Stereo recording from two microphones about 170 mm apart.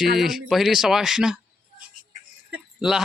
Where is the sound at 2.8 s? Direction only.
5° right (ahead or behind).